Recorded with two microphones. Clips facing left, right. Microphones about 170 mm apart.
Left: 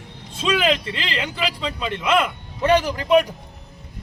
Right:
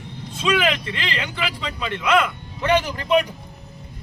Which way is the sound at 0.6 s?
35° left (ahead or behind).